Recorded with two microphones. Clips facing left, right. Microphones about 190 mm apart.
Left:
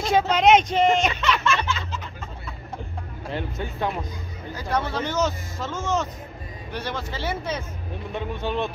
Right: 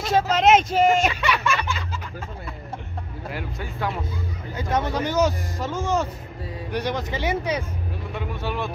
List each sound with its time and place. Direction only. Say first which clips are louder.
0.3 s speech: even; 5° right (ahead or behind)
3.3 s speech: left 3 dB; 25° left (ahead or behind)
4.6 s speech: right 2 dB; 20° right (ahead or behind)
8.1 s speech: left 2 dB; 20° left (ahead or behind)